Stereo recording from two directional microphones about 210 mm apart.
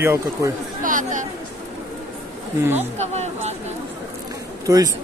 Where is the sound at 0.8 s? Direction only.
40° right (ahead or behind).